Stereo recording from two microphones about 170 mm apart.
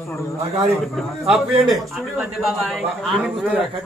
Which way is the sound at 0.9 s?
Centre (ahead or behind).